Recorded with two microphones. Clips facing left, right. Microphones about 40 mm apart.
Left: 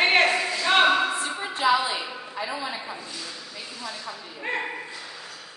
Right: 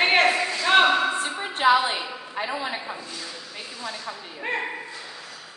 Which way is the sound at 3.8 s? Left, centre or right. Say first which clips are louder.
Right 2 dB; centre.